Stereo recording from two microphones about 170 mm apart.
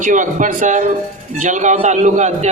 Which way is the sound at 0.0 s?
50° right (ahead or behind).